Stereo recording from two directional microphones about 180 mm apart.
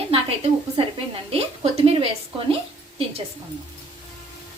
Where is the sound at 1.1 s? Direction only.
35° right (ahead or behind).